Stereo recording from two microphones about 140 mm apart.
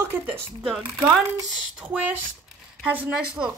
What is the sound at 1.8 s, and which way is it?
Speech, 15° right (ahead or behind).